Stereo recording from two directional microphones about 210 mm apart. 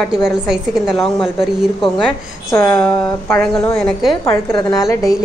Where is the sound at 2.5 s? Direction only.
10° left (ahead or behind).